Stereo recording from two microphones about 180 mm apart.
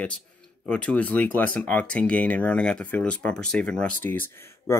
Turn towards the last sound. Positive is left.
turn(degrees=10)  # may be behind; listen again after turning